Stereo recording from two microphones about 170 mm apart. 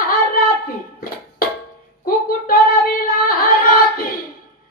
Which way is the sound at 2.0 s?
55° left (ahead or behind).